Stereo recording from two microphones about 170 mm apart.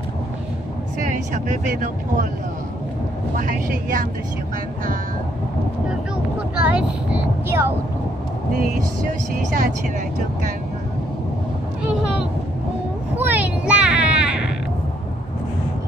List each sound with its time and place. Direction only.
1.0 s speech: 50° right (ahead or behind)
3.3 s speech: 55° right (ahead or behind)
6.6 s speech: 5° right (ahead or behind)
9.3 s speech: 55° right (ahead or behind)
13.2 s a sound: 10° right (ahead or behind)